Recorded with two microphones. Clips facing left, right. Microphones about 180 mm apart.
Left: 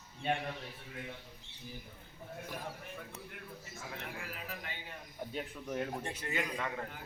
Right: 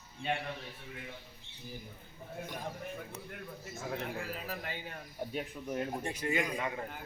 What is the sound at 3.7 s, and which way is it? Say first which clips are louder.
A man's voice: right 8 dB; 40° right (ahead or behind).